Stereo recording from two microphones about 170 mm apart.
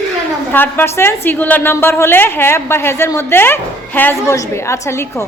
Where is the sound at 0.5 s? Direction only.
10° left (ahead or behind).